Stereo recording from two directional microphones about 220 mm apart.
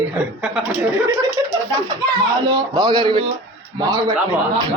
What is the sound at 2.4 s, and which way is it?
Speech, 20° right (ahead or behind).